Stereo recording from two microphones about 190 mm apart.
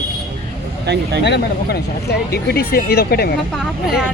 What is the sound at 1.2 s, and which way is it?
Speech, 60° left (ahead or behind).